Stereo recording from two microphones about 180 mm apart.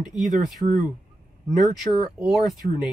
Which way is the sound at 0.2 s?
40° right (ahead or behind).